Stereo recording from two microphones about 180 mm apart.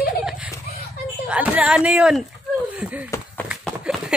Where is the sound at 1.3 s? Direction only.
10° right (ahead or behind).